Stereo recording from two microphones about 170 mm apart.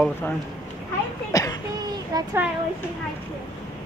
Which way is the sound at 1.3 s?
20° left (ahead or behind).